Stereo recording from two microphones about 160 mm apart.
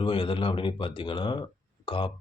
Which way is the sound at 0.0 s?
35° left (ahead or behind).